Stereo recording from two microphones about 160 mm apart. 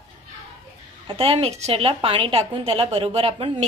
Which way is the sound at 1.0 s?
35° right (ahead or behind).